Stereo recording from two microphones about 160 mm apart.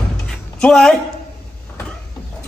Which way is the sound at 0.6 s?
5° left (ahead or behind).